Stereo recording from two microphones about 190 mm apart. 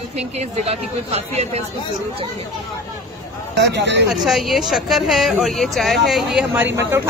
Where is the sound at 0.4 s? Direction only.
35° right (ahead or behind).